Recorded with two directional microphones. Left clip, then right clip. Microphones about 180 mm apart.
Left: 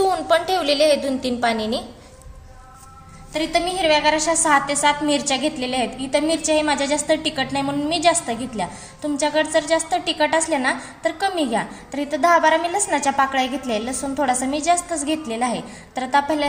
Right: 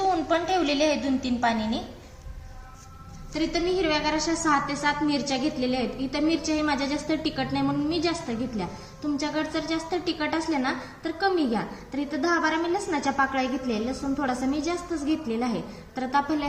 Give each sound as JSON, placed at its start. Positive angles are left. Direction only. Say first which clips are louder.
{"t": 0.1, "sound": "a woman's voice", "louder": "left 5 dB", "side_deg": 60}
{"t": 3.3, "sound": "a woman's voice", "louder": "left 5 dB", "side_deg": 50}